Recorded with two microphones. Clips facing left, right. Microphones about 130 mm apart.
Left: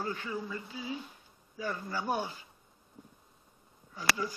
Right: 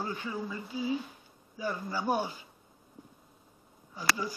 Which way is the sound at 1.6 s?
10° right (ahead or behind).